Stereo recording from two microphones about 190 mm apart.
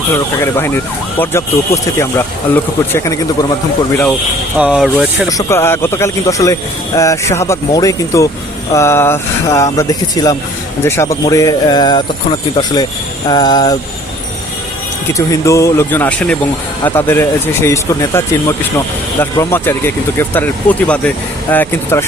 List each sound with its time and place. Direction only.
1.2 s speech: 15° left (ahead or behind)
4.5 s speech: 5° right (ahead or behind)
5.4 s speech: 15° left (ahead or behind)
10.2 s jingle bell: 20° left (ahead or behind)
10.8 s speech: 15° left (ahead or behind)
13.2 s jingle bell: 20° left (ahead or behind)
15.3 s speech: 15° left (ahead or behind)